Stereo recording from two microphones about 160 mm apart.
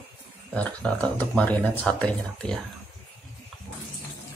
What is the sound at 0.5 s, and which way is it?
Speech, 5° left (ahead or behind).